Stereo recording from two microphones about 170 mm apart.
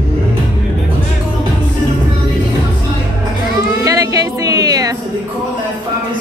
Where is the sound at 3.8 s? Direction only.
20° right (ahead or behind).